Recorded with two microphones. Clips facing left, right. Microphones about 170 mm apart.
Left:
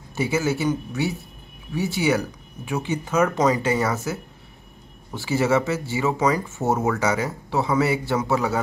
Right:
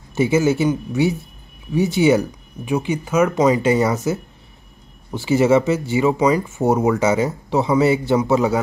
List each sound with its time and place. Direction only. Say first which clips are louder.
0.1 s speech: right 6 dB; 20° right (ahead or behind)